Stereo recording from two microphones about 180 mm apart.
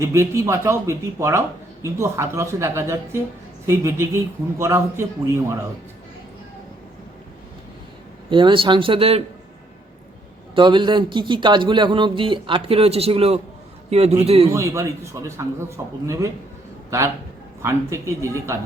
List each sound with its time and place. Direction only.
0.0 s a man's voice: 15° right (ahead or behind)
8.3 s a man's voice: 25° right (ahead or behind)
10.5 s a man's voice: 25° right (ahead or behind)
14.5 s a man's voice: 15° right (ahead or behind)
17.6 s a man's voice: 15° right (ahead or behind)